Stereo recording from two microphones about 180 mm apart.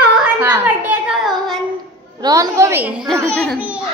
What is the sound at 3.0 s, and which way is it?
Speech, 5° left (ahead or behind).